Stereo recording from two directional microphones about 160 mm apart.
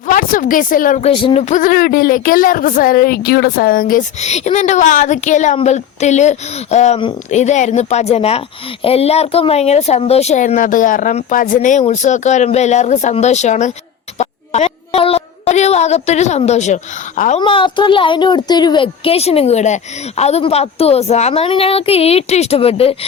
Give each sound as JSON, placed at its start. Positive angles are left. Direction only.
{"t": 0.1, "sound": "speech", "side_deg": 60}
{"t": 1.1, "sound": "a woman's voice", "side_deg": 35}
{"t": 1.6, "sound": "speech", "side_deg": 60}
{"t": 4.2, "sound": "a woman's voice", "side_deg": 45}
{"t": 17.4, "sound": "a woman's voice", "side_deg": 30}